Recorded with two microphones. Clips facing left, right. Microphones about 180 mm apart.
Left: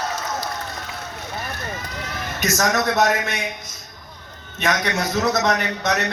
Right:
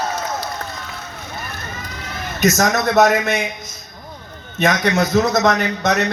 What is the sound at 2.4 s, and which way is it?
Speech, 45° right (ahead or behind).